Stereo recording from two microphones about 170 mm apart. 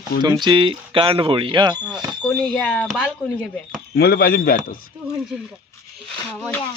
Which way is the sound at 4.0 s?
65° left (ahead or behind).